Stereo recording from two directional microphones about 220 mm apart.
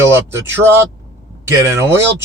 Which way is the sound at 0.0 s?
10° right (ahead or behind).